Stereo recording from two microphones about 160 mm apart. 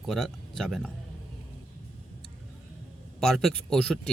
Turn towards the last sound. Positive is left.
turn(degrees=5)  # may be behind; listen again after turning